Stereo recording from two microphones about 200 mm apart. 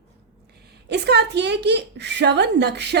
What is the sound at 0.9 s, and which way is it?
A woman's voice, 55° right (ahead or behind).